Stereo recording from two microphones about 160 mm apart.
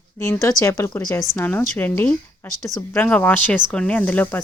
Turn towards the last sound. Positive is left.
turn(degrees=10)  # may be behind; listen again after turning